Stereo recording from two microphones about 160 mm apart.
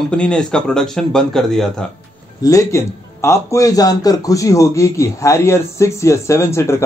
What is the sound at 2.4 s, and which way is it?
A man's voice, 20° left (ahead or behind).